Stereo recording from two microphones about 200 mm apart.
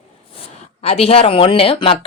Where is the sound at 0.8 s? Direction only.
30° left (ahead or behind).